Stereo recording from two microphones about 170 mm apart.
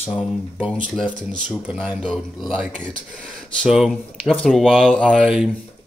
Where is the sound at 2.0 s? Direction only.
Centre (ahead or behind).